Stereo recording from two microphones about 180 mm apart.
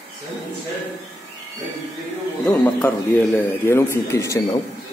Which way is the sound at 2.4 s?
10° left (ahead or behind).